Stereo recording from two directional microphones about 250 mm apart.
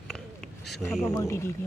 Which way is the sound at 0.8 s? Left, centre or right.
Centre.